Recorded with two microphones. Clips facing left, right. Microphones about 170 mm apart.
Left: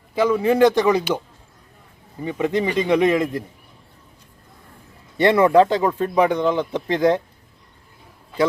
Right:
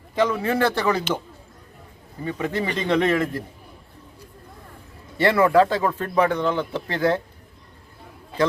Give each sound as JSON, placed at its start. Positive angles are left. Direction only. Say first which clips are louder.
{"t": 0.2, "sound": "speech", "louder": "left 5 dB", "side_deg": 10}
{"t": 2.2, "sound": "speech", "louder": "left 4 dB", "side_deg": 20}
{"t": 5.1, "sound": "speech", "louder": "left 3 dB", "side_deg": 20}